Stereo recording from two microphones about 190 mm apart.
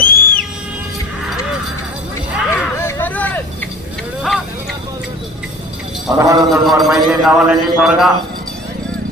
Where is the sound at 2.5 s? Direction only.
15° left (ahead or behind).